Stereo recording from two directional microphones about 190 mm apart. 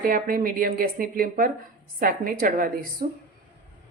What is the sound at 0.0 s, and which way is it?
A woman's voice, 50° right (ahead or behind).